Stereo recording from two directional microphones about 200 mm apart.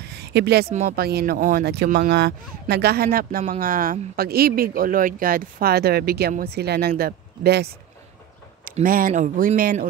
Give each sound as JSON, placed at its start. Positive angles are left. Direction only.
{"t": 0.1, "sound": "a sound", "side_deg": -55}
{"t": 0.7, "sound": "speech", "side_deg": -35}
{"t": 0.9, "sound": "speech", "side_deg": -50}
{"t": 8.7, "sound": "speech", "side_deg": -45}